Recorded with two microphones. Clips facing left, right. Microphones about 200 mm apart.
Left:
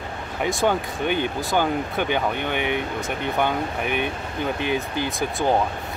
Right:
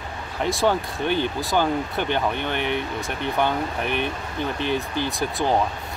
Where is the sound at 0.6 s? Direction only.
15° left (ahead or behind).